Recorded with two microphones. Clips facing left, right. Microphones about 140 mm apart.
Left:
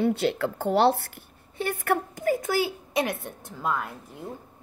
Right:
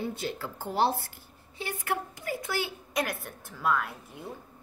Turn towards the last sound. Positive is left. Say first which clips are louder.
# even
turn(degrees=20)  # may be behind; listen again after turning